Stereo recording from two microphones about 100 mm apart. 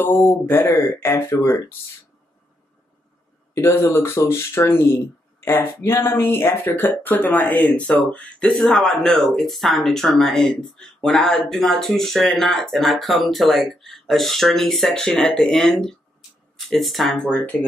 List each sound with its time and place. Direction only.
0.1 s speech: 20° left (ahead or behind)
3.5 s speech: 25° left (ahead or behind); by 17.3 s centre (ahead or behind)
17.3 s speech: 15° left (ahead or behind)